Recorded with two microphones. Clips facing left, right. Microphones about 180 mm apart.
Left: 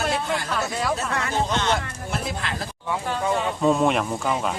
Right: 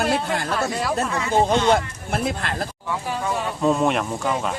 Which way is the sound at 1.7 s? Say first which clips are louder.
Right 5 dB; 55° right (ahead or behind).